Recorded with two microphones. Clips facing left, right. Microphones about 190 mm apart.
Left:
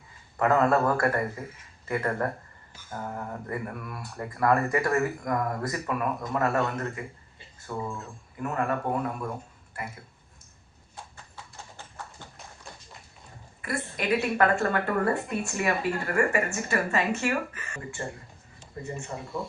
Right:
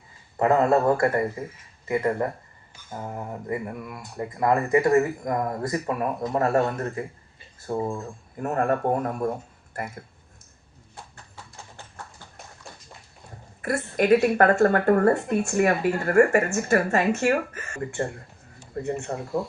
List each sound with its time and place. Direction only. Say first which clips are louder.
0.3 s speech: right 3 dB; 25° right (ahead or behind); by 10.0 s 50° right (ahead or behind)
13.6 s speech: right 8 dB; 45° right (ahead or behind)
18.7 s speech: right 7 dB; 70° right (ahead or behind)